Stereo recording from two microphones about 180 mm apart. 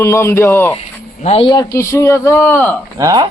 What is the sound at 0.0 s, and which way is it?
Speech, 15° left (ahead or behind).